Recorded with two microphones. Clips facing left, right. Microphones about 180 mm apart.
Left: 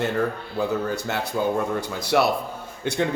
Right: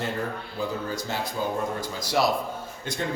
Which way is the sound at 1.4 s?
90° left.